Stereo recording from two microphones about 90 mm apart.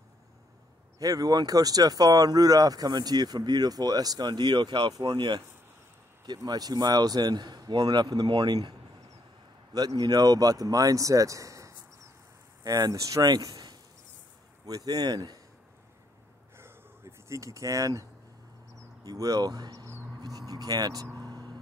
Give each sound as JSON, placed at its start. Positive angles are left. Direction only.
{"t": 0.9, "sound": "speech", "side_deg": -40}
{"t": 4.9, "sound": "speech", "side_deg": -45}
{"t": 6.2, "sound": "speech", "side_deg": -50}
{"t": 9.8, "sound": "speech", "side_deg": -45}
{"t": 16.5, "sound": "a sound", "side_deg": -30}
{"t": 18.8, "sound": "speech", "side_deg": -45}
{"t": 20.2, "sound": "a sound", "side_deg": -45}
{"t": 21.2, "sound": "whispering", "side_deg": -50}